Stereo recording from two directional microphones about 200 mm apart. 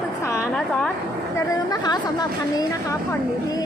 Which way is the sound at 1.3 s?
20° left (ahead or behind).